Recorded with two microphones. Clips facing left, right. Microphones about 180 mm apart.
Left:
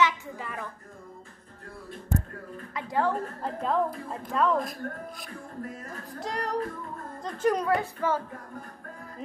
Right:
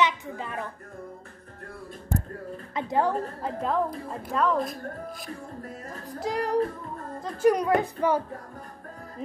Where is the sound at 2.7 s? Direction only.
25° right (ahead or behind).